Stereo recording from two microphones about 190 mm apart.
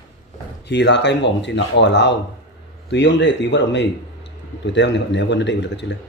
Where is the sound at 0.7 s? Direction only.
65° left (ahead or behind).